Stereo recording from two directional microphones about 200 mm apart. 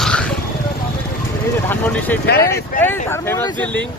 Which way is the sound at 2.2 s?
55° left (ahead or behind).